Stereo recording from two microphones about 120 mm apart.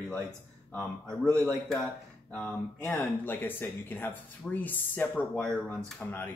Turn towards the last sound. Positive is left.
turn(degrees=15)  # may be behind; listen again after turning